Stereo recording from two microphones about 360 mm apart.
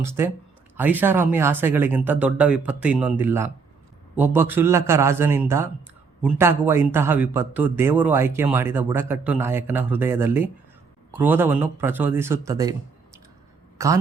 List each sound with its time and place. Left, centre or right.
0.0 s a man's voice: centre
13.7 s a man's voice: centre